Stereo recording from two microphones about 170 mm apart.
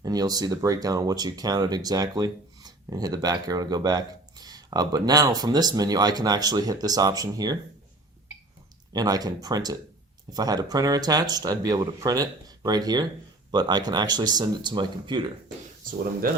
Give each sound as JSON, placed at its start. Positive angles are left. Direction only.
{"t": 0.0, "sound": "speech", "side_deg": -25}
{"t": 8.9, "sound": "speech", "side_deg": -20}